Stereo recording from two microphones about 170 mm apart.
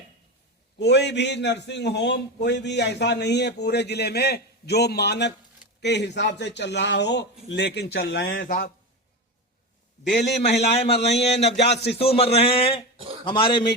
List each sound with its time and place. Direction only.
0.8 s a man's voice: 90° left
5.8 s a man's voice: 90° left
8.4 s a man's voice: 55° left (ahead or behind)
10.2 s a man's voice: 85° left
10.8 s a man's voice: 75° left (ahead or behind)
11.9 s a man's voice: 35° left (ahead or behind)